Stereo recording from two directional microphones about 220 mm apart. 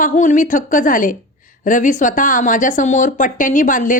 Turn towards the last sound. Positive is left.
turn(degrees=35)  # may be behind; listen again after turning